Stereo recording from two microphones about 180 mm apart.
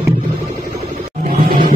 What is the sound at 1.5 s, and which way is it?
Vehicle, 50° right (ahead or behind).